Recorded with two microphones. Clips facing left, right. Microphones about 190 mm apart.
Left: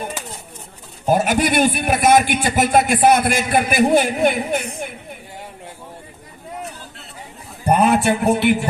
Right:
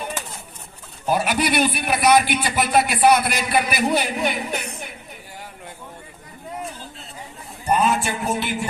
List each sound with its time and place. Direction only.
1.0 s a man's voice: 45° left (ahead or behind)
7.6 s a man's voice: 60° left (ahead or behind)